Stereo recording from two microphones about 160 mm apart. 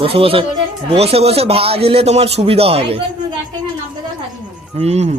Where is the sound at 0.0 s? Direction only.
35° right (ahead or behind).